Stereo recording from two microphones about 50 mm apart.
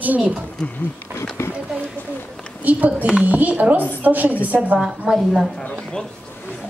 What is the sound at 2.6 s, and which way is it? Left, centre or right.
A woman's voice, right.